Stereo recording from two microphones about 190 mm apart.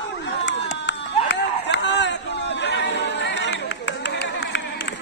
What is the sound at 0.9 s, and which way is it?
Run, 70° left (ahead or behind).